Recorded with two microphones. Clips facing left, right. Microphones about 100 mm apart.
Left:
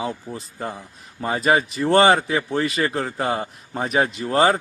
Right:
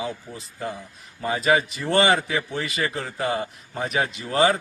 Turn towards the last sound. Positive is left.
turn(degrees=40)  # may be behind; listen again after turning